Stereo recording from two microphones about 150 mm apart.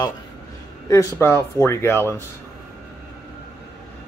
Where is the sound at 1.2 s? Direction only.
15° left (ahead or behind).